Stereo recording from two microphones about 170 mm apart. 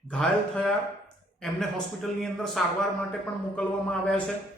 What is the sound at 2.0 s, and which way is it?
A man's voice, centre (ahead or behind).